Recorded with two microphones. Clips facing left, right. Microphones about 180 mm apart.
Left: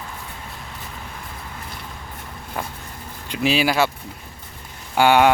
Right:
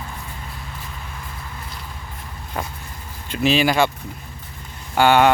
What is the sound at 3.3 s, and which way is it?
Speech, 10° left (ahead or behind).